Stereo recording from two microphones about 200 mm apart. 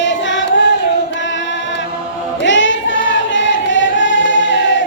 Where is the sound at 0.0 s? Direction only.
65° left (ahead or behind).